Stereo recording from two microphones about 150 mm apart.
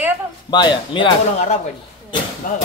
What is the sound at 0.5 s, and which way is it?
Speech, 30° left (ahead or behind).